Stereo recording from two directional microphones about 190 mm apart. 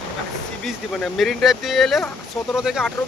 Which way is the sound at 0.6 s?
Centre (ahead or behind).